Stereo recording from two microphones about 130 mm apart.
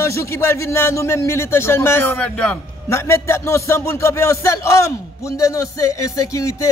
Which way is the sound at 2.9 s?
20° left (ahead or behind).